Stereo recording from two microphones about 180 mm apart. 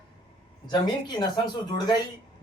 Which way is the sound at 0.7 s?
25° left (ahead or behind).